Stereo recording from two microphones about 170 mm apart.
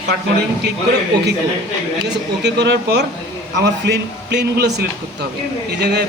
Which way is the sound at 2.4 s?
80° right.